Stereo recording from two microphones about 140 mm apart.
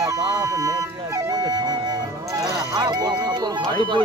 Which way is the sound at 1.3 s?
30° right (ahead or behind).